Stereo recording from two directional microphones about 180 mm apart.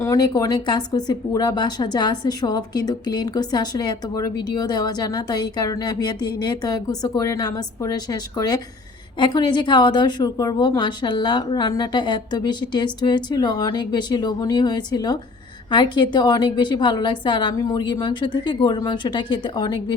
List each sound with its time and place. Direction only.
0.0 s a woman's voice: 20° left (ahead or behind)